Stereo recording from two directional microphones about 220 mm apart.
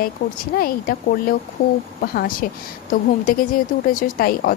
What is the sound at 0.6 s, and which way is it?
A woman's voice, 40° left (ahead or behind).